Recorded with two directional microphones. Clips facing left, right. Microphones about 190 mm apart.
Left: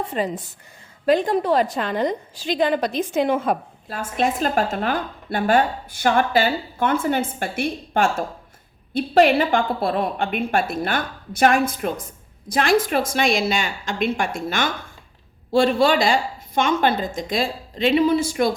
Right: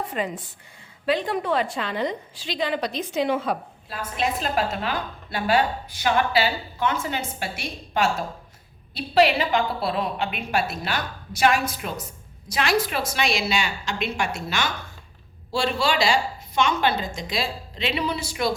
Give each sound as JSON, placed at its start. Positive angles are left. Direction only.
{"t": 0.1, "sound": "a woman's voice", "side_deg": 30}
{"t": 1.0, "sound": "a woman's voice", "side_deg": 45}